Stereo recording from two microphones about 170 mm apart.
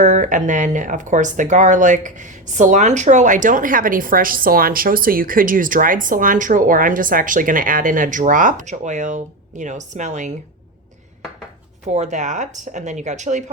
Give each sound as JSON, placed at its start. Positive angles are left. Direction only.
{"t": 0.0, "sound": "speech", "side_deg": -45}
{"t": 11.9, "sound": "speech", "side_deg": -45}